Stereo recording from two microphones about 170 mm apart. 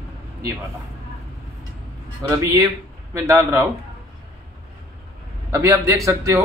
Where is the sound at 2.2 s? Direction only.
20° right (ahead or behind).